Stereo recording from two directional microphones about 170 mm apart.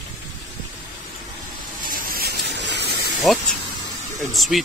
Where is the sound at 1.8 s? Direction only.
55° right (ahead or behind); by 2.9 s 80° right.